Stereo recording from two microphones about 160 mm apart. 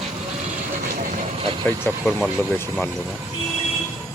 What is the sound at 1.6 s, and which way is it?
Speech, 5° left (ahead or behind).